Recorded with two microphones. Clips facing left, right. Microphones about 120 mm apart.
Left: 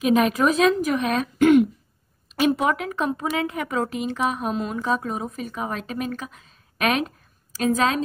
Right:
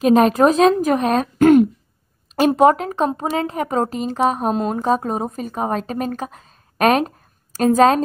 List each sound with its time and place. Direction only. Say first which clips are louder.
0.0 s a woman's voice: right 6 dB; 35° right (ahead or behind)